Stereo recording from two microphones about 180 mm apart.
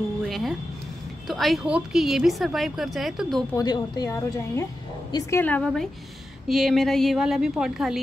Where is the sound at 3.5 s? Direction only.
20° left (ahead or behind).